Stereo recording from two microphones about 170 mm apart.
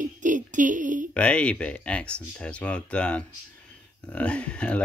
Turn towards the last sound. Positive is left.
turn(degrees=5)  # may be behind; listen again after turning